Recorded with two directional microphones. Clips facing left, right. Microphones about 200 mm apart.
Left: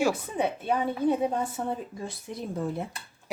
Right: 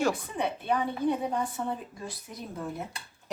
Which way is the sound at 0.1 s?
25° left (ahead or behind).